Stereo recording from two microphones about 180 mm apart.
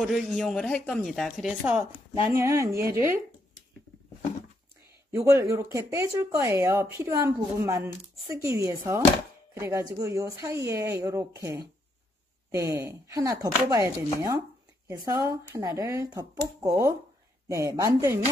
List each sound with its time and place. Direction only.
0.0 s a woman's voice: centre (ahead or behind)
2.3 s speech: 15° right (ahead or behind)
5.1 s speech: 20° right (ahead or behind)
14.9 s speech: 20° right (ahead or behind)